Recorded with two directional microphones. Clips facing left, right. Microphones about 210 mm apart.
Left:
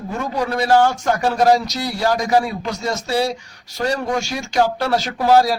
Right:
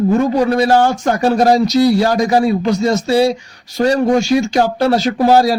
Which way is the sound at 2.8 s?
25° right (ahead or behind).